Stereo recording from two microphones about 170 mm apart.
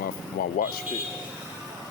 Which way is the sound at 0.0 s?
60° left (ahead or behind).